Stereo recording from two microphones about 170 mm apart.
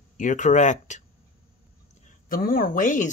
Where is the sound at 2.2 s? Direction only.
55° left (ahead or behind).